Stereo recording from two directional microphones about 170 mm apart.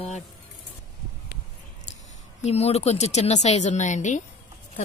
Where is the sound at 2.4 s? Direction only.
40° left (ahead or behind).